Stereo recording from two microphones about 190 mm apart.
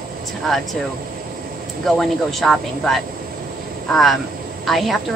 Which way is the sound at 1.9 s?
Centre (ahead or behind).